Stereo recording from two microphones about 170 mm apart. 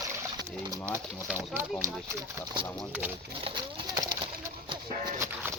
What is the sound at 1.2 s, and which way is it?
Speech, 10° right (ahead or behind).